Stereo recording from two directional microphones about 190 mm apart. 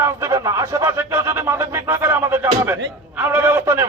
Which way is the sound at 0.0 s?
15° right (ahead or behind).